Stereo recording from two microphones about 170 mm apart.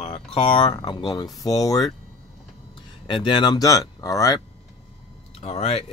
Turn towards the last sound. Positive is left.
turn(degrees=35)  # may be behind; listen again after turning